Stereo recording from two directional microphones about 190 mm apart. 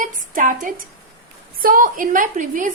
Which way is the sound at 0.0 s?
45° right (ahead or behind).